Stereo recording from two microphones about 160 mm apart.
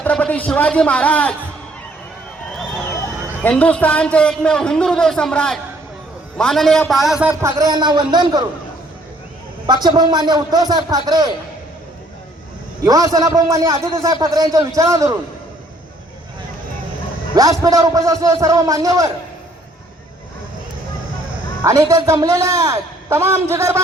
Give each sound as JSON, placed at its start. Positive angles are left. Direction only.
{"t": 0.0, "sound": "a man's voice", "side_deg": 10}
{"t": 3.4, "sound": "a man's voice", "side_deg": 10}
{"t": 7.6, "sound": "a man's voice", "side_deg": -25}
{"t": 9.6, "sound": "a man's voice", "side_deg": -25}
{"t": 12.8, "sound": "a man's voice", "side_deg": -20}
{"t": 17.3, "sound": "a man's voice", "side_deg": -20}
{"t": 21.6, "sound": "a man's voice", "side_deg": -20}